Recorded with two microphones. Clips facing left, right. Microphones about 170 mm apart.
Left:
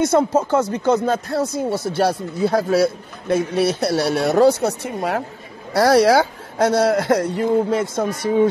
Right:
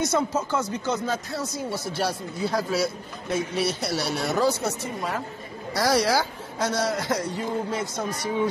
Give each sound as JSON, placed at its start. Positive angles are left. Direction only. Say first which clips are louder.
{"t": 0.0, "sound": "speech", "louder": "left 8 dB", "side_deg": 55}